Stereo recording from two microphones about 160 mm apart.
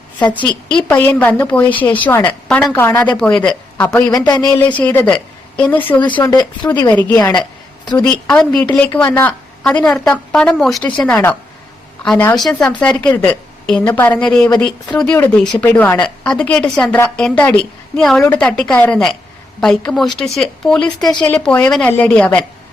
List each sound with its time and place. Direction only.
0.3 s a woman's voice: 10° left (ahead or behind)
4.1 s speech: 25° left (ahead or behind)
4.7 s speech: 10° left (ahead or behind)
6.2 s speech: 25° left (ahead or behind)
6.9 s a woman's voice: 10° left (ahead or behind)
12.4 s a woman's voice: centre (ahead or behind)